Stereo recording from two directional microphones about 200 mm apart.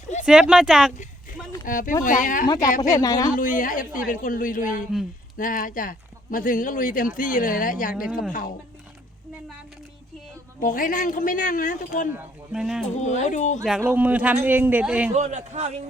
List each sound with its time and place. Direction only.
0.3 s speech: 5° right (ahead or behind)
1.6 s speech: 45° left (ahead or behind)
2.9 s speech: 15° left (ahead or behind)
3.3 s speech: 45° left (ahead or behind)
10.6 s speech: 45° left (ahead or behind)
12.5 s speech: 5° right (ahead or behind)
13.0 s speech: 35° left (ahead or behind)
13.7 s a man's voice: 5° right (ahead or behind)
15.1 s a man's voice: 35° right (ahead or behind)